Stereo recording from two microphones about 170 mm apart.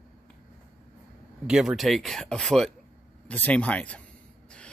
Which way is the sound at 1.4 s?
5° right (ahead or behind).